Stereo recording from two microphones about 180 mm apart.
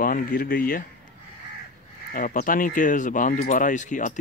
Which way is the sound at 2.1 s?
50° left (ahead or behind).